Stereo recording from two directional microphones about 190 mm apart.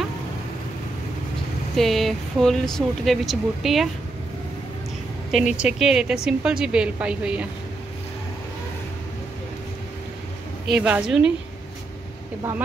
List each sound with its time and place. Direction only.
1.8 s speech: centre (ahead or behind)
5.3 s speech: 5° right (ahead or behind)
10.7 s speech: 5° right (ahead or behind)